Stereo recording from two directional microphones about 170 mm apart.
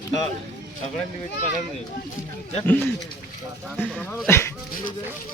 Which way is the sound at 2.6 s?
10° left (ahead or behind).